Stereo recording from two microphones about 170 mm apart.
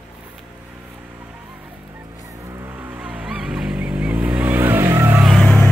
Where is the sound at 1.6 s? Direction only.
15° right (ahead or behind).